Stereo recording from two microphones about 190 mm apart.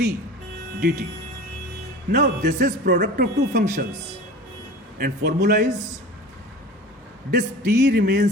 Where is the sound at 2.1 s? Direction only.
55° right (ahead or behind).